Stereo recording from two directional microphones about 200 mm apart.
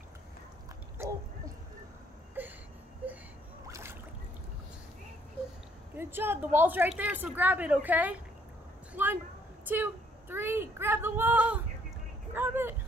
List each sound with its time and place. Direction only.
1.0 s a sound: 15° right (ahead or behind)
2.4 s whimper: 10° right (ahead or behind)
3.0 s wail: 5° right (ahead or behind)
3.6 s boat: 15° right (ahead or behind)
5.9 s a woman's voice: 10° right (ahead or behind)
9.7 s a sound: 10° right (ahead or behind)